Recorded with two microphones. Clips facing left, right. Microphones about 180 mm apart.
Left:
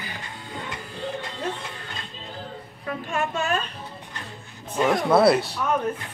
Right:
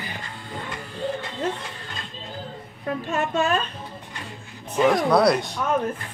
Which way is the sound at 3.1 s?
35° right (ahead or behind).